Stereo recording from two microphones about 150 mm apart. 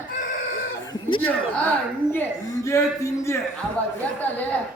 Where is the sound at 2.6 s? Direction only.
20° left (ahead or behind).